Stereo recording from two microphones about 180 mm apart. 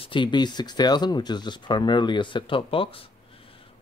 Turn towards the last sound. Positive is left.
turn(degrees=30)  # may be behind; listen again after turning